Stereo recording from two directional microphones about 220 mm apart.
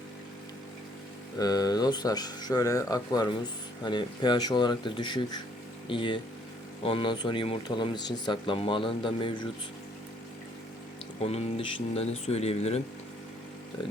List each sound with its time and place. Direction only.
1.4 s speech: 15° left (ahead or behind)
11.2 s speech: 30° left (ahead or behind)